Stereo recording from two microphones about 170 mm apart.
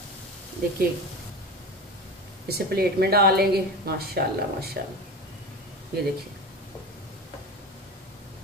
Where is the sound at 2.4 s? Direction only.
65° right (ahead or behind).